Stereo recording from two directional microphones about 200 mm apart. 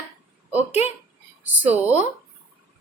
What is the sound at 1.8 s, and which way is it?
Speech, 10° right (ahead or behind).